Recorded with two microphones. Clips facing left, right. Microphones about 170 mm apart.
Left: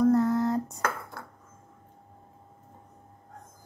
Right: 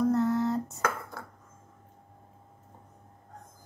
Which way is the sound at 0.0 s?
Centre (ahead or behind).